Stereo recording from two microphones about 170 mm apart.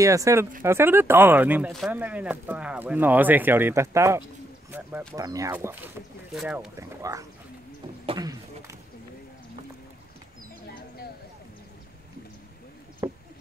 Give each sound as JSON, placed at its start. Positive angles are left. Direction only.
{"t": 0.0, "sound": "speech", "side_deg": -20}
{"t": 6.3, "sound": "speech", "side_deg": -5}
{"t": 6.8, "sound": "speech", "side_deg": -20}
{"t": 8.1, "sound": "a sound", "side_deg": -20}